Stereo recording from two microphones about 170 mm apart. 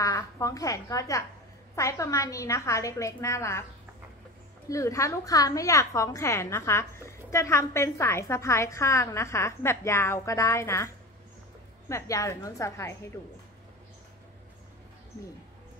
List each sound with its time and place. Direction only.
0.0 s a woman's voice: 20° left (ahead or behind)
4.6 s a woman's voice: 20° left (ahead or behind)
11.9 s a woman's voice: 20° left (ahead or behind)